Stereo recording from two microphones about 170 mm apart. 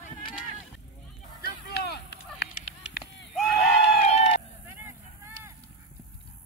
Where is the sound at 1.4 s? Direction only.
70° left (ahead or behind).